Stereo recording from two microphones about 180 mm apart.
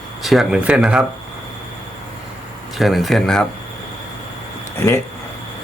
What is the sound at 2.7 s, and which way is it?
Speech, centre (ahead or behind).